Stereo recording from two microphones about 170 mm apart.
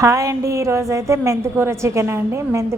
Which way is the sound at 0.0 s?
20° right (ahead or behind).